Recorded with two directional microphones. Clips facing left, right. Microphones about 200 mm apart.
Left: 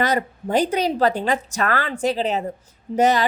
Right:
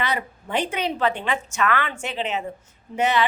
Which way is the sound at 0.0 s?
40° left (ahead or behind).